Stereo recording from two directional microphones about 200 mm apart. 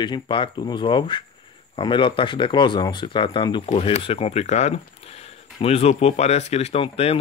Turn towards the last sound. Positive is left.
turn(degrees=30)  # may be behind; listen again after turning